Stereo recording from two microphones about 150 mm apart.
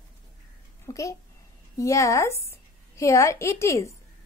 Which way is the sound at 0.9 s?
20° left (ahead or behind).